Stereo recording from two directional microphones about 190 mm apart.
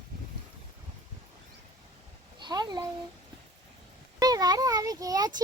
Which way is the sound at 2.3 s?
20° right (ahead or behind).